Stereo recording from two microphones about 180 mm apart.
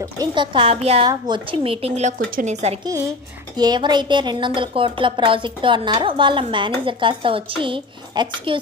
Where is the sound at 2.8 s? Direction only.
15° right (ahead or behind).